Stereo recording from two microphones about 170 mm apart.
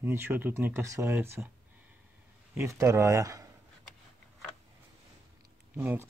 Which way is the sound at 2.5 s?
15° right (ahead or behind).